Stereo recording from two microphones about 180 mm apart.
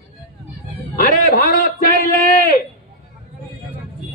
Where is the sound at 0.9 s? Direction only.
55° left (ahead or behind).